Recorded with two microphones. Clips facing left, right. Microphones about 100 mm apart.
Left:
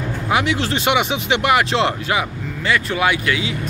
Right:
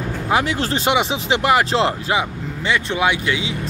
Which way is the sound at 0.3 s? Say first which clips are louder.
Even; 35° right (ahead or behind).